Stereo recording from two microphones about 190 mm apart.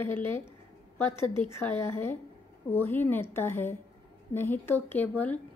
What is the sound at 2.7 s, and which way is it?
Speech, 10° left (ahead or behind).